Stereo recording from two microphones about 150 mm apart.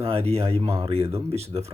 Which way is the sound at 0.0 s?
40° right (ahead or behind).